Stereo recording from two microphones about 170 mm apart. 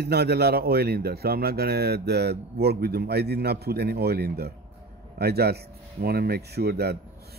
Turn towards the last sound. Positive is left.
turn(degrees=-70)  # may be behind; listen again after turning